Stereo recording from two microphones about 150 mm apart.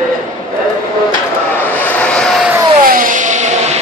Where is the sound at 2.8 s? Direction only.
70° right (ahead or behind).